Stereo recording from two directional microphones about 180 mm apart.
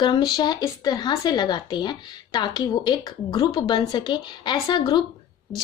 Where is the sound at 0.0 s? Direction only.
25° left (ahead or behind).